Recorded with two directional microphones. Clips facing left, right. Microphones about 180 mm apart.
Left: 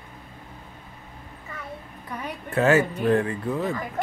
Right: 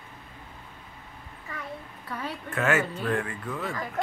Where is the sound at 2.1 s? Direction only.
15° left (ahead or behind).